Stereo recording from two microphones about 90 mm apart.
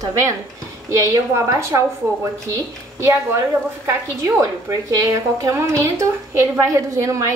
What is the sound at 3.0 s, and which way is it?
A woman's voice, 30° right (ahead or behind).